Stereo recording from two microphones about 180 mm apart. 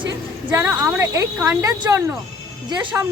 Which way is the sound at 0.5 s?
15° right (ahead or behind).